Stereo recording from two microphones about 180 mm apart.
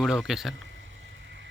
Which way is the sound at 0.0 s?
Centre (ahead or behind).